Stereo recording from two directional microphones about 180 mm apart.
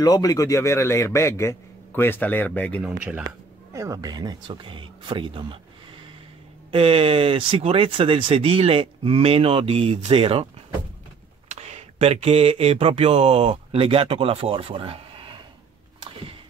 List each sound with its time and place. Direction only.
0.0 s a man's voice: 20° left (ahead or behind)
3.0 s speech: 5° right (ahead or behind)
3.3 s speech: 20° right (ahead or behind)
6.7 s speech: 30° right (ahead or behind)
11.5 s mantra: 35° right (ahead or behind)